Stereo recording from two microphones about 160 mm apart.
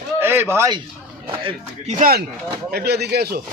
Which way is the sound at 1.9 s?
55° right (ahead or behind).